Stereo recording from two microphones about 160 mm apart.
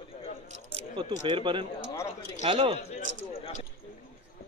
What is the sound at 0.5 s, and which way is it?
A man's voice, 40° right (ahead or behind).